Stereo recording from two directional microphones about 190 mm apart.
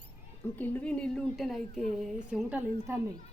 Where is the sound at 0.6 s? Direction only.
10° left (ahead or behind); by 3.0 s 5° right (ahead or behind).